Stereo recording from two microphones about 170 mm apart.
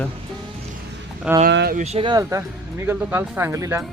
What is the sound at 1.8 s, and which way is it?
Speech, 35° right (ahead or behind).